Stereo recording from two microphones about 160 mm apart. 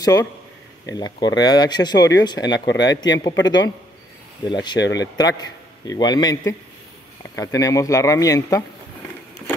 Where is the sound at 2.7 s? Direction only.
90° left.